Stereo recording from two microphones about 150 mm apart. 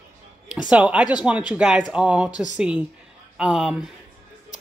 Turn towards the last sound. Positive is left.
turn(degrees=-5)  # may be behind; listen again after turning